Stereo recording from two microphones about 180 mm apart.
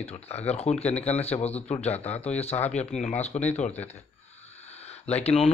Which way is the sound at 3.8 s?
35° left (ahead or behind).